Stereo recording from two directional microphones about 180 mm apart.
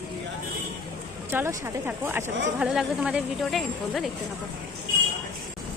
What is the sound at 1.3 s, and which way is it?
A woman's voice, 15° right (ahead or behind).